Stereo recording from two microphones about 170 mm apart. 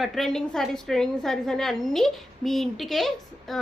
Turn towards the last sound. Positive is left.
turn(degrees=0)  # may be behind; listen again after turning